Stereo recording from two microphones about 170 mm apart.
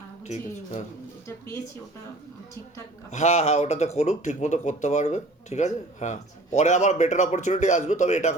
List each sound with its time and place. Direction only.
0.3 s a woman's voice: 40° left (ahead or behind)
3.1 s speech: 40° left (ahead or behind)